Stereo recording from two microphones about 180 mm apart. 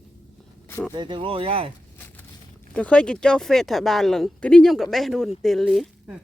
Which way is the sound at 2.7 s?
5° left (ahead or behind).